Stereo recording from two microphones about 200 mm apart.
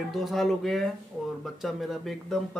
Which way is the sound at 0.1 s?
Centre (ahead or behind).